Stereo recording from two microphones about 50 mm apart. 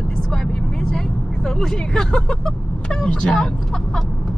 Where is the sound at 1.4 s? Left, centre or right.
Centre.